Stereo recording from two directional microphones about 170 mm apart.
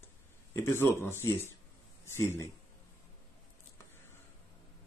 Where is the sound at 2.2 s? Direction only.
15° left (ahead or behind).